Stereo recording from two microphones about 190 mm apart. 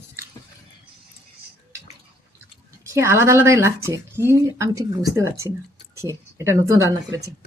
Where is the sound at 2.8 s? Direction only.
15° right (ahead or behind).